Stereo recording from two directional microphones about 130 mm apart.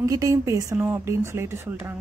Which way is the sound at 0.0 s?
25° right (ahead or behind).